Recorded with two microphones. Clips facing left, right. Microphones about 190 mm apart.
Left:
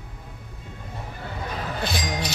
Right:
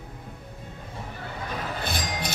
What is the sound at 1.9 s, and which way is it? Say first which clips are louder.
Music: left 3 dB; 55° right (ahead or behind).